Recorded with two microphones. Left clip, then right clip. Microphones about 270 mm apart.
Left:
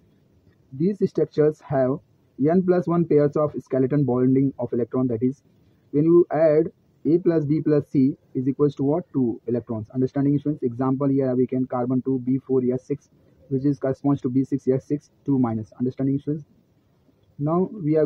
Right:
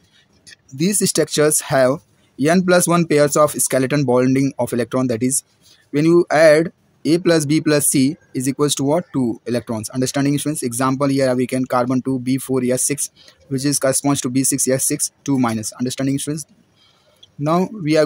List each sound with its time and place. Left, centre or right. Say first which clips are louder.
0.7 s speech: right 4 dB; right
13.5 s speech: right 2 dB; right
13.7 s speech: right 6 dB; right
14.1 s speech: right 4 dB; right
14.8 s speech: right 6 dB; right
17.4 s speech: right 5 dB; right